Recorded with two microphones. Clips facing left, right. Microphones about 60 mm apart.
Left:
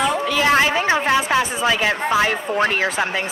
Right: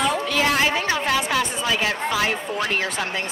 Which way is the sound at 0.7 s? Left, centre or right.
Left.